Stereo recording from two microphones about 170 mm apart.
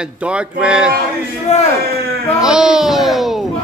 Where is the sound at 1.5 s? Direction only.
40° left (ahead or behind).